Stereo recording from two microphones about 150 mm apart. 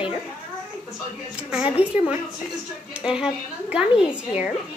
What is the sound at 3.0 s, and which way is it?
Speech, 5° right (ahead or behind).